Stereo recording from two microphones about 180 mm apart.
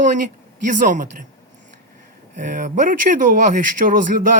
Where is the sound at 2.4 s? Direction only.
45° right (ahead or behind).